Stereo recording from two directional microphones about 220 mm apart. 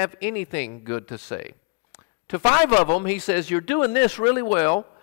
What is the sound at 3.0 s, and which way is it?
Speech, 10° left (ahead or behind).